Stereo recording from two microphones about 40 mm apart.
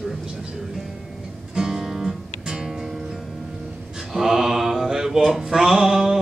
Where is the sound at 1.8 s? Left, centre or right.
Centre.